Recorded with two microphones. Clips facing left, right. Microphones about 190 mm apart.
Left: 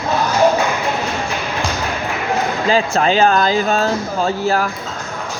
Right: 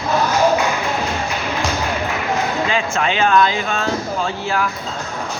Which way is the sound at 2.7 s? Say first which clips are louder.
Left 5 dB; 35° left (ahead or behind).